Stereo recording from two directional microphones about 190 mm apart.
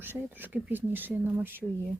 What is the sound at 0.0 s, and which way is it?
Speech, 10° right (ahead or behind).